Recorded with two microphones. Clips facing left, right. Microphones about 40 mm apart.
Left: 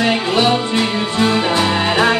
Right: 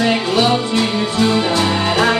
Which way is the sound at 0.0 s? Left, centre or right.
Left.